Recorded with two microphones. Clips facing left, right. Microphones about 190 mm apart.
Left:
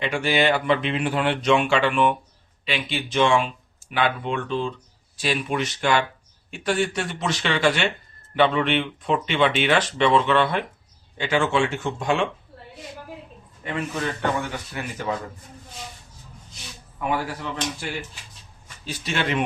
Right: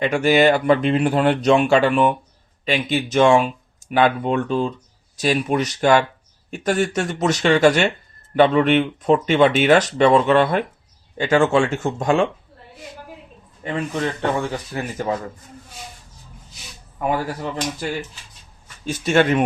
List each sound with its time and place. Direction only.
0.0 s speech: 45° right (ahead or behind)
13.7 s speech: 35° right (ahead or behind)
17.1 s speech: 40° right (ahead or behind)
18.9 s speech: 45° right (ahead or behind)